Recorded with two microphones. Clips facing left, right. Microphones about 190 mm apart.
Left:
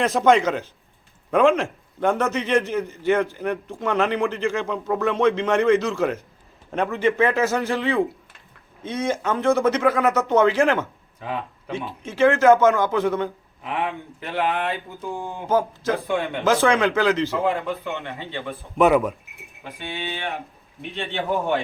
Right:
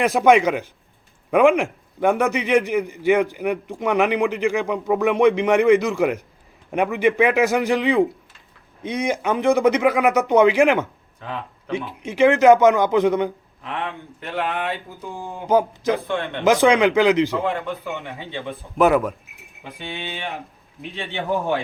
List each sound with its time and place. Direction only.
0.0 s a man's voice: 10° right (ahead or behind)
11.2 s speech: 5° left (ahead or behind)
11.9 s a man's voice: 15° right (ahead or behind)
13.6 s speech: 5° left (ahead or behind)
15.4 s a man's voice: 15° right (ahead or behind)
17.3 s speech: centre (ahead or behind)
18.0 s a man's voice: 15° right (ahead or behind)
18.8 s speech: centre (ahead or behind)
19.6 s a man's voice: 15° right (ahead or behind)
21.2 s a man's voice: 15° left (ahead or behind)